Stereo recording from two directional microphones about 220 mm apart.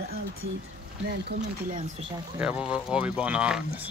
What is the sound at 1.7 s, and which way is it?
Speech, 35° right (ahead or behind).